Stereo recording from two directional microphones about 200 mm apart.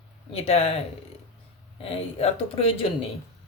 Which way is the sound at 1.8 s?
30° left (ahead or behind).